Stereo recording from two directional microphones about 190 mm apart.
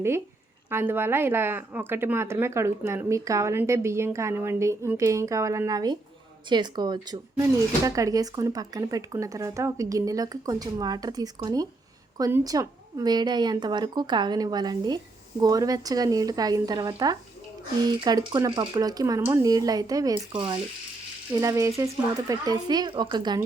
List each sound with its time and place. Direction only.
0.7 s a woman's voice: 10° right (ahead or behind)